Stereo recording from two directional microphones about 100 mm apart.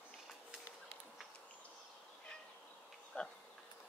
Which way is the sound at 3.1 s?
15° left (ahead or behind).